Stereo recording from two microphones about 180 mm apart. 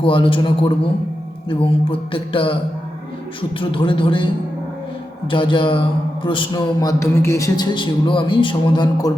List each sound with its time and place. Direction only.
0.0 s a man's voice: 30° left (ahead or behind)
3.6 s a man's voice: 30° left (ahead or behind)
5.3 s a man's voice: 30° left (ahead or behind)